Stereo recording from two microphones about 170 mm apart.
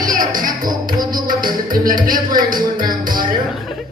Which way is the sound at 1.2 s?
55° right (ahead or behind).